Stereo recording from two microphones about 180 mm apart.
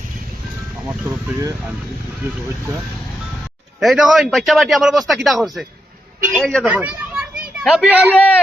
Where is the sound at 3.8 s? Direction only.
Centre (ahead or behind).